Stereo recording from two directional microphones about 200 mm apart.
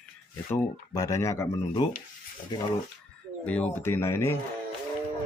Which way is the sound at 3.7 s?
10° left (ahead or behind).